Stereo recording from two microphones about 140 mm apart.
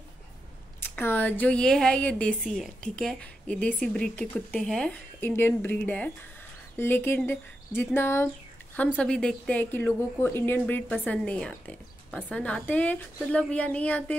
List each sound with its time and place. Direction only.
0.7 s speech: 15° left (ahead or behind)